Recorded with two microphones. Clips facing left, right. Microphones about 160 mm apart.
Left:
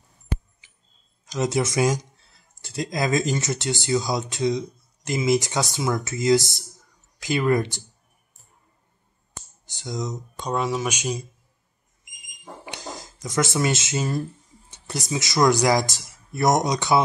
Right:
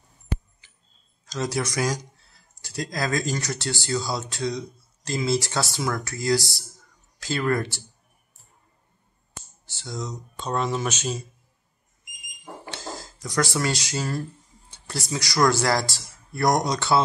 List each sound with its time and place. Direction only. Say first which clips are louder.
0.6 s tick-tock: even; 15° left (ahead or behind)
1.2 s speech: left 4 dB; 20° left (ahead or behind)
9.7 s speech: left 4 dB; 20° left (ahead or behind)
12.7 s speech: even; 20° left (ahead or behind)